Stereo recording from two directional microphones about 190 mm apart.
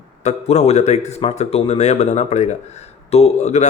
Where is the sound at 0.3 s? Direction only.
35° left (ahead or behind).